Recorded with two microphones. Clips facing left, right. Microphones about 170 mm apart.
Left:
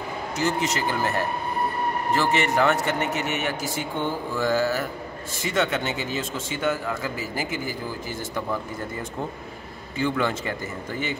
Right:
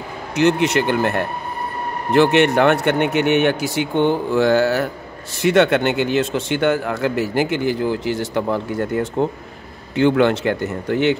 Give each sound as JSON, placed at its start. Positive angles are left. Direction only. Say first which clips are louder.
{"t": 0.4, "sound": "a man's voice", "louder": "right 10 dB", "side_deg": -65}